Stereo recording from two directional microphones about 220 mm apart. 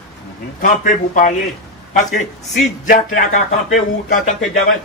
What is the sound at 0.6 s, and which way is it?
A man's voice, 35° left (ahead or behind).